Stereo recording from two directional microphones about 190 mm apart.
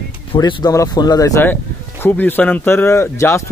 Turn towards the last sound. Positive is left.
turn(degrees=15)  # may be behind; listen again after turning